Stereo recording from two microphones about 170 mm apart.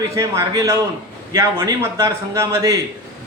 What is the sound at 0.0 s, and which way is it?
A man's voice, 20° right (ahead or behind).